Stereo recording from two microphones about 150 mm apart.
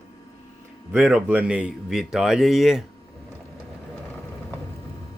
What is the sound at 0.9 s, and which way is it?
Speech, 5° right (ahead or behind).